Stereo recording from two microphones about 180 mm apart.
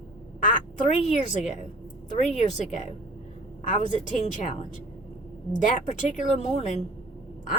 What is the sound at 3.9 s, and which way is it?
Speech, 45° left (ahead or behind).